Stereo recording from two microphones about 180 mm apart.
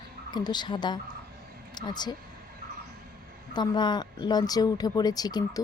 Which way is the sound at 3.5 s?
25° left (ahead or behind).